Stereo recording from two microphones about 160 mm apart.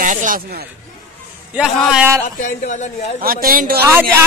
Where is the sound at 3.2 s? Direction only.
65° right (ahead or behind).